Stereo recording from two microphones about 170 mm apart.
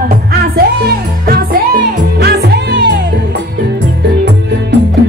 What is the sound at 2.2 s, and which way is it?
Music, 85° right.